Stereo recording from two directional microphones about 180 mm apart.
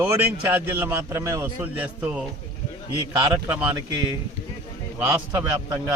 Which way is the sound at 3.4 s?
15° right (ahead or behind).